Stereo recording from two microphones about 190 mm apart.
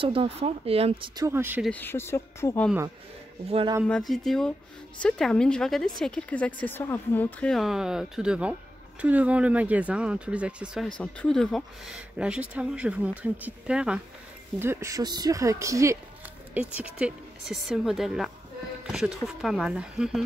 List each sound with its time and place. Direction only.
0.0 s speech: 30° right (ahead or behind)
1.1 s speech: 15° right (ahead or behind)
1.6 s speech: 10° left (ahead or behind)
3.4 s speech: 30° right (ahead or behind)
4.1 s speech: centre (ahead or behind)